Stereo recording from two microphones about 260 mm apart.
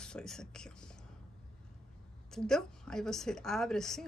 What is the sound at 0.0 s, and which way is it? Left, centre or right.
Speech, centre.